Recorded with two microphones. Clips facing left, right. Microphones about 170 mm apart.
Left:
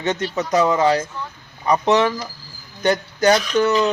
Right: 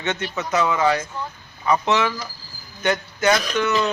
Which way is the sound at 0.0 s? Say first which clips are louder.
Left 4 dB; 35° left (ahead or behind).